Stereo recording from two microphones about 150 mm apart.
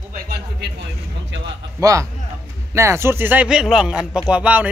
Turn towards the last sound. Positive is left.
turn(degrees=-10)  # may be behind; listen again after turning